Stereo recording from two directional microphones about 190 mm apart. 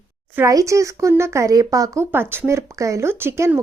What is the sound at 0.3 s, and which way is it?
Speech, 15° right (ahead or behind).